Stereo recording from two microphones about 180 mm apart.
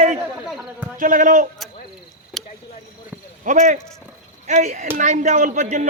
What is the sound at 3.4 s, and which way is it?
Speech, 45° right (ahead or behind).